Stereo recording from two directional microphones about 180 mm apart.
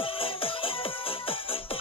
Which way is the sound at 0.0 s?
30° left (ahead or behind).